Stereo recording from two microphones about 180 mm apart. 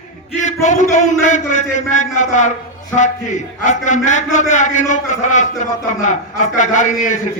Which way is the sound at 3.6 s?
45° left (ahead or behind).